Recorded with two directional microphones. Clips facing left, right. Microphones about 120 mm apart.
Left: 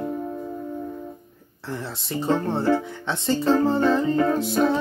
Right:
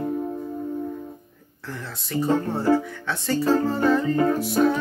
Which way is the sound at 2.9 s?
25° left (ahead or behind).